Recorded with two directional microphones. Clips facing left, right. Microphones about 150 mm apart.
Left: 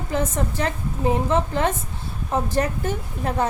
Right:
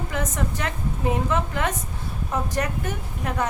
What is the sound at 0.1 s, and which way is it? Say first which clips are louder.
A woman's voice: left 6 dB; 30° left (ahead or behind).